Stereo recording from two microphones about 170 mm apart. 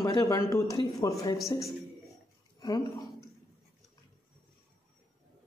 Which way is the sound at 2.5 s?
25° left (ahead or behind).